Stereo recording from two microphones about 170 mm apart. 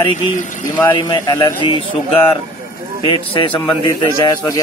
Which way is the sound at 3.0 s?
30° left (ahead or behind).